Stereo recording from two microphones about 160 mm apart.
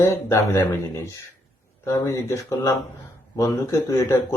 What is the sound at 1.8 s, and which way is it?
Speech, 20° left (ahead or behind).